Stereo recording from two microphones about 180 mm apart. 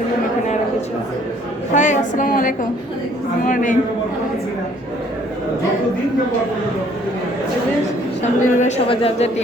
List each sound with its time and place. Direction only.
1.7 s a woman's voice: 40° left (ahead or behind)
8.2 s a woman's voice: 45° left (ahead or behind)
8.9 s speech: 30° left (ahead or behind)